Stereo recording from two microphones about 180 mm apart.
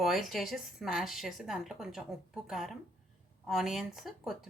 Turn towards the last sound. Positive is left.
turn(degrees=0)  # may be behind; listen again after turning